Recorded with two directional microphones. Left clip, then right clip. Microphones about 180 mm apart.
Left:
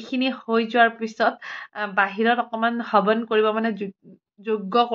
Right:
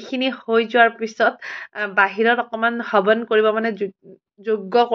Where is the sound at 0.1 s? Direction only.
15° right (ahead or behind).